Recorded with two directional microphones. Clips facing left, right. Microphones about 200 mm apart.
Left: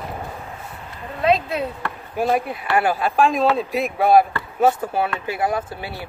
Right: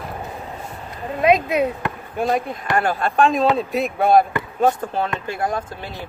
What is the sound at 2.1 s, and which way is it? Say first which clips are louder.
Speech: left 1 dB; 5° left (ahead or behind).